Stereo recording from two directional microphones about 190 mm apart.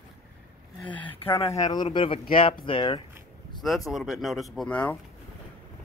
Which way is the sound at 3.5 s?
25° left (ahead or behind).